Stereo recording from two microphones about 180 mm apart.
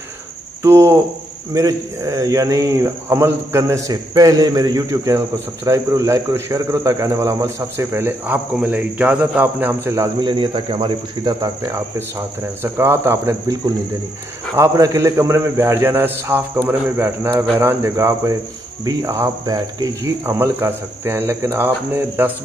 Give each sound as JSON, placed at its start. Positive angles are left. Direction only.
{"t": 0.6, "sound": "cricket", "side_deg": -15}
{"t": 1.5, "sound": "a man's voice", "side_deg": -20}